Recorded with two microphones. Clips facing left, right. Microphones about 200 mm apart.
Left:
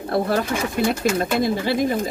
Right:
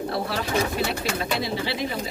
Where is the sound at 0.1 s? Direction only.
50° left (ahead or behind).